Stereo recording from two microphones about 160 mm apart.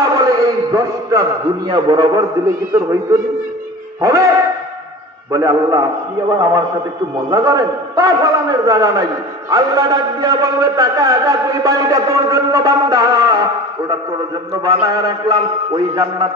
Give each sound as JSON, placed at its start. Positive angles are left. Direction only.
{"t": 0.1, "sound": "a sound", "side_deg": -25}
{"t": 1.7, "sound": "a man's voice", "side_deg": -30}
{"t": 5.3, "sound": "a man's voice", "side_deg": -20}